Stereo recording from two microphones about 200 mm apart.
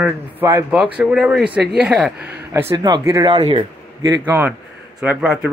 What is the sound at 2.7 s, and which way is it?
Speech, 20° right (ahead or behind).